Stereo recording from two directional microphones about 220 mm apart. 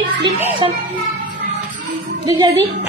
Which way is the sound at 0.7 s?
45° right (ahead or behind).